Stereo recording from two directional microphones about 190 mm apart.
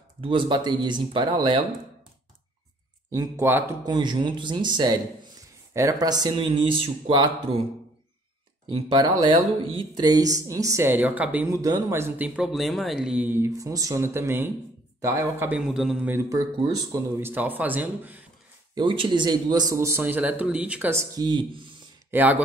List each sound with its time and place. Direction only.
0.2 s speech: 25° right (ahead or behind)
3.1 s speech: 15° right (ahead or behind)
8.7 s speech: 25° right (ahead or behind); by 18.2 s 10° right (ahead or behind)
18.8 s speech: 25° right (ahead or behind)
22.1 s speech: 10° right (ahead or behind)